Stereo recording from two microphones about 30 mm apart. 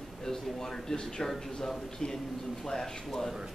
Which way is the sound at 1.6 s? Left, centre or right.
Centre.